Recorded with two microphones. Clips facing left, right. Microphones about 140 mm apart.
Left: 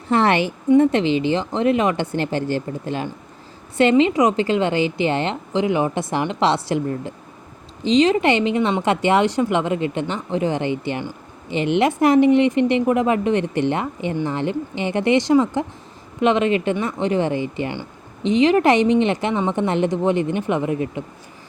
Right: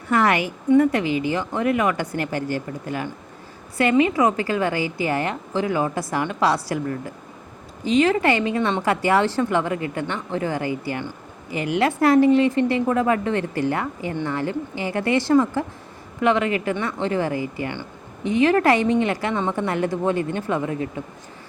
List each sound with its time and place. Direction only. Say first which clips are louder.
0.1 s a woman's voice: left 2 dB; 30° left (ahead or behind)